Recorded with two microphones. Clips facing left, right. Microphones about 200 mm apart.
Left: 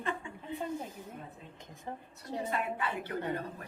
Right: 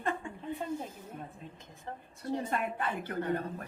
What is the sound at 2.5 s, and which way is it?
Speech, 50° right (ahead or behind).